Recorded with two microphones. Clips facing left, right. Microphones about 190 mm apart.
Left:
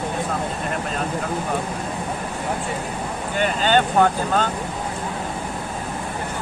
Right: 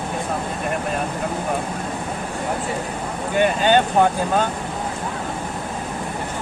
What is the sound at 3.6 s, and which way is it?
Speech, 15° right (ahead or behind).